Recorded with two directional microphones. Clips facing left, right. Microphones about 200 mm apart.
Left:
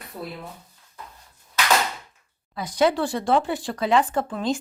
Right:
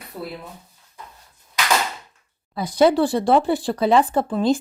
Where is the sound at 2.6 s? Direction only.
35° right (ahead or behind).